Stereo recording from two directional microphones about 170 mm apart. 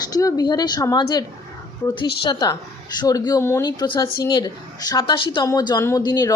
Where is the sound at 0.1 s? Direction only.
20° left (ahead or behind).